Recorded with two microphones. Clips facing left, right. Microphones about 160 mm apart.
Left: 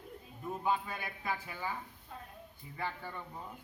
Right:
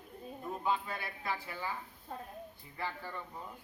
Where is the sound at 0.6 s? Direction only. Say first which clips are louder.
Left 1 dB; 15° left (ahead or behind).